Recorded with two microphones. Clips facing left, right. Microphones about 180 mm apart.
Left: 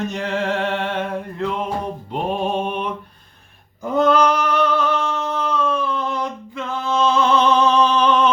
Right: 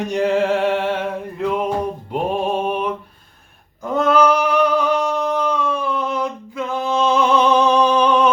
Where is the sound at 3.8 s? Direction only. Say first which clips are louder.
Right 1 dB; centre (ahead or behind).